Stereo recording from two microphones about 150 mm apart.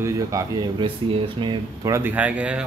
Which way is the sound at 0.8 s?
35° right (ahead or behind).